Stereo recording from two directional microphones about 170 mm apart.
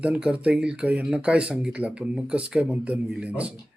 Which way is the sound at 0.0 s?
5° right (ahead or behind).